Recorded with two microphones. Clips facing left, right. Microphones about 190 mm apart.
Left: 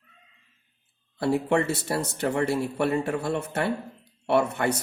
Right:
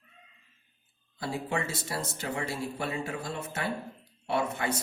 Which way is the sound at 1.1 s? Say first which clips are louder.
Left 9 dB; 65° left (ahead or behind).